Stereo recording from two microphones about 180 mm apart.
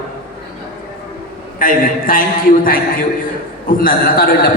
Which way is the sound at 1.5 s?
50° left (ahead or behind).